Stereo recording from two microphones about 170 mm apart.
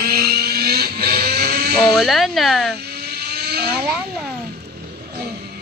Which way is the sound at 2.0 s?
Centre (ahead or behind).